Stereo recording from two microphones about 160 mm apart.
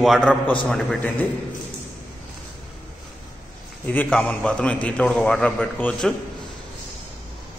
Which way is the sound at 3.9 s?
10° left (ahead or behind).